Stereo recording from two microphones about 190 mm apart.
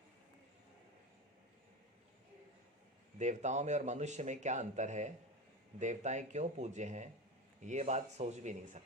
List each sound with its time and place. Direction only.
3.2 s a man's voice: 40° right (ahead or behind)